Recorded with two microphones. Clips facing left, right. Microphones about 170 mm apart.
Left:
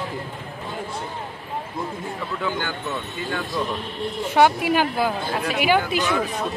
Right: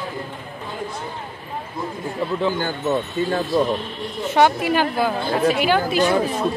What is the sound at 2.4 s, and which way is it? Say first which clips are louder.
Speech: right 3 dB; 40° right (ahead or behind).